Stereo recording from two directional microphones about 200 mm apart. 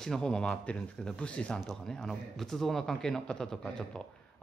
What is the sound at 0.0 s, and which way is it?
Speech, 5° left (ahead or behind).